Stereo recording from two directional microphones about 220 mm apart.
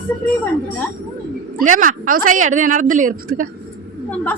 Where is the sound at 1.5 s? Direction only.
35° right (ahead or behind).